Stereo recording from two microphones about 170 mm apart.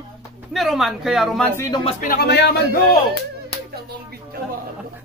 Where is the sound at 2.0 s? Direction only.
70° left (ahead or behind).